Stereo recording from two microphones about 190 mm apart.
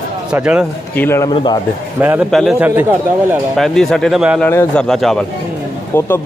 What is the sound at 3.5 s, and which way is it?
Speech, centre (ahead or behind).